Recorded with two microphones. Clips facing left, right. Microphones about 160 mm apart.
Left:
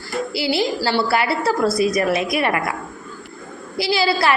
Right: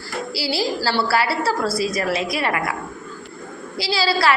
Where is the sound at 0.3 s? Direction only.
20° left (ahead or behind).